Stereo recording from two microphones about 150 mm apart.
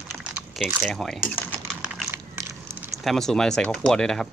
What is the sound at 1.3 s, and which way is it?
Speech, 15° left (ahead or behind).